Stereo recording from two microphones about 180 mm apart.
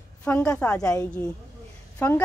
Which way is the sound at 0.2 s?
10° left (ahead or behind).